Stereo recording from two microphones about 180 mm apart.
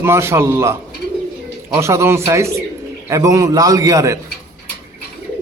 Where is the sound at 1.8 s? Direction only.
15° right (ahead or behind).